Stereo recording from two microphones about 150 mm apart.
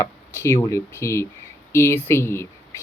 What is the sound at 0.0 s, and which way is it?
Speech, 15° left (ahead or behind).